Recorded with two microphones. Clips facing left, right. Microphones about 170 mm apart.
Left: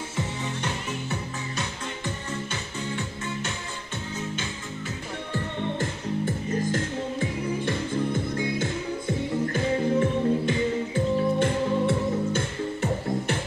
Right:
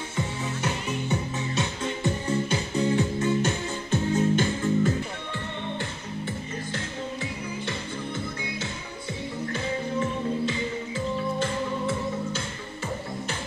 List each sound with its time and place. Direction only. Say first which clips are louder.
2.5 s music: right 8 dB; 35° right (ahead or behind)
5.3 s music: left 4 dB; 45° left (ahead or behind)